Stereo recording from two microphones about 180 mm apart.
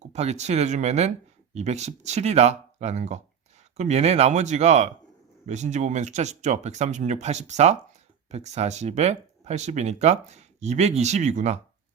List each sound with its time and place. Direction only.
0.0 s speech: 40° right (ahead or behind)